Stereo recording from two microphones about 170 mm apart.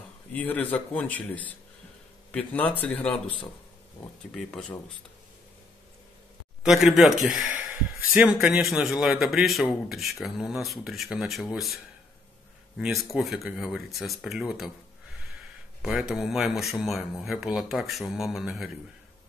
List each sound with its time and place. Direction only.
0.3 s speech: 10° left (ahead or behind)
6.6 s speech: centre (ahead or behind)
15.8 s speech: 5° right (ahead or behind)